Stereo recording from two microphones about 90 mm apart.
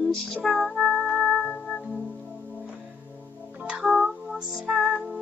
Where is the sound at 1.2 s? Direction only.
10° left (ahead or behind).